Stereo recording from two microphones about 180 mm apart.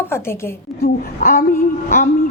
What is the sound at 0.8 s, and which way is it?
A woman's voice, 55° left (ahead or behind).